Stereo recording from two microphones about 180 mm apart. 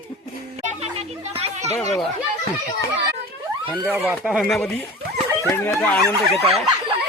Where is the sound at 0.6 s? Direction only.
35° right (ahead or behind).